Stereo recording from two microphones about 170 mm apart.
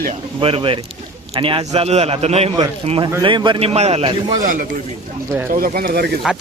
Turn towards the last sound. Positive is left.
turn(degrees=0)  # may be behind; listen again after turning